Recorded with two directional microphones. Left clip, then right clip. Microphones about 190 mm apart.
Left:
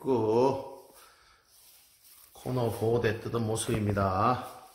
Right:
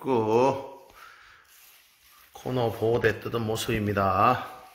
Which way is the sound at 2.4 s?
5° right (ahead or behind).